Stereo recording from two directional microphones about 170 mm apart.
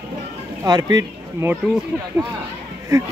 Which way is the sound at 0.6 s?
20° right (ahead or behind).